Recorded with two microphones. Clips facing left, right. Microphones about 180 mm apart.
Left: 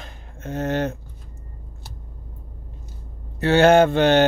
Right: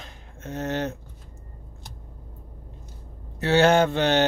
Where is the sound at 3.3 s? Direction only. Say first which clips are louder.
Left 4 dB; 55° left (ahead or behind).